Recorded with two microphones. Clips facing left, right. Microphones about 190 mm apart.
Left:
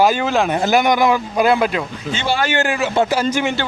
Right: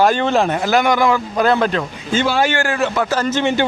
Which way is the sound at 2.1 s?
90° left.